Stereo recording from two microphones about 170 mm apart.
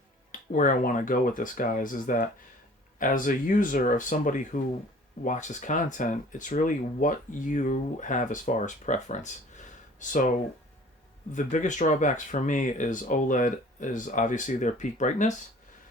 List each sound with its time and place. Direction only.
0.3 s speech: 50° left (ahead or behind)